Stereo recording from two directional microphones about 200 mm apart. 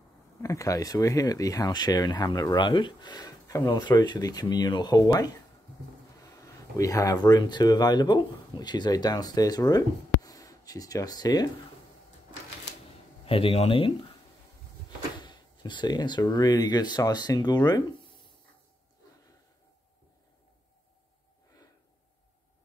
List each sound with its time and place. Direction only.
0.4 s speech: 15° left (ahead or behind)
13.2 s speech: 25° left (ahead or behind)
15.1 s speech: 20° left (ahead or behind)